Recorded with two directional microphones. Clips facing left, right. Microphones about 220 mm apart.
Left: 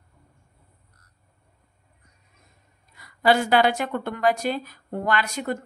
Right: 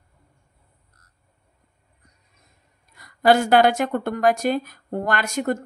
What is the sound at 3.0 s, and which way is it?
Speech, 45° right (ahead or behind).